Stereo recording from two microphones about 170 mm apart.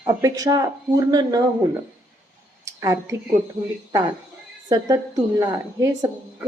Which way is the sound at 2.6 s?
15° right (ahead or behind).